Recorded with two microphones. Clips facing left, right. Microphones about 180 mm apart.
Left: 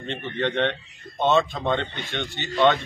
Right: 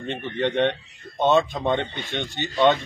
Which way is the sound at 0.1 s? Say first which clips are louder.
Right 2 dB; 15° right (ahead or behind).